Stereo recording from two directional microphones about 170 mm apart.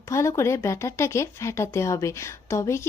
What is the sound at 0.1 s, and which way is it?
Speech, 15° left (ahead or behind).